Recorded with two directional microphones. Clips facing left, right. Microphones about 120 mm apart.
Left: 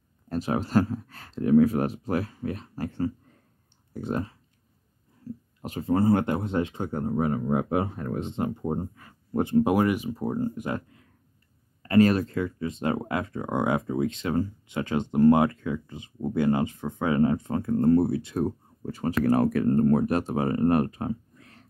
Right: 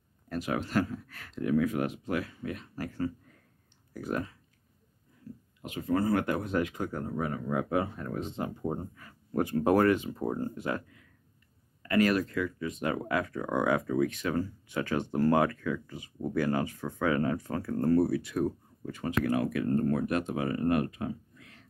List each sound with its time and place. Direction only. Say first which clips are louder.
0.3 s speech: left 6 dB; 30° left (ahead or behind)
5.6 s speech: left 4 dB; 35° left (ahead or behind)
9.7 s speech: even; 15° left (ahead or behind)
11.8 s speech: left 5 dB; 30° left (ahead or behind)